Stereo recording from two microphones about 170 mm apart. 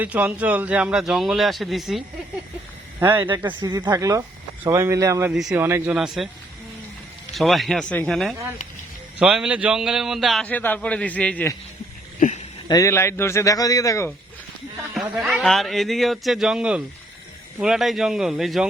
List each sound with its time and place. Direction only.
0.0 s a man's voice: 10° right (ahead or behind)
3.0 s speech: 15° right (ahead or behind)
3.6 s speech: 25° right (ahead or behind)
5.3 s a man's voice: 5° right (ahead or behind)
5.6 s speech: 15° right (ahead or behind)
6.0 s a man's voice: centre (ahead or behind)
7.3 s a man's voice: centre (ahead or behind)
12.2 s speech: 50° left (ahead or behind)
12.6 s a man's voice: 20° left (ahead or behind)
15.1 s a man's voice: centre (ahead or behind)